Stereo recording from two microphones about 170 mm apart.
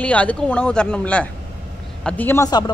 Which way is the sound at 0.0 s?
10° left (ahead or behind).